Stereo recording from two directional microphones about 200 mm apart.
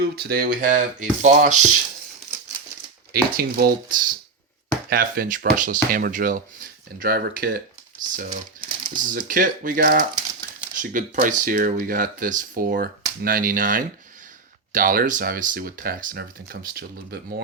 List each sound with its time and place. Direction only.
0.0 s speech: 50° right (ahead or behind)
3.1 s speech: 50° right (ahead or behind)
8.7 s a sound: 25° right (ahead or behind)
9.0 s speech: 45° right (ahead or behind)